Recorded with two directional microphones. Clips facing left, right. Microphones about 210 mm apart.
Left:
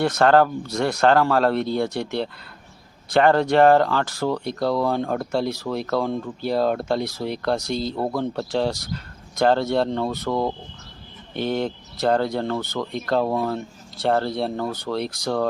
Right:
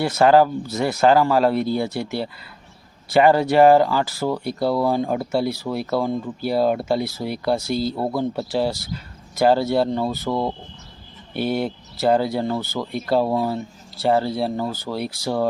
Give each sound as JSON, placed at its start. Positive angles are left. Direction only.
{"t": 0.0, "sound": "speech", "side_deg": -5}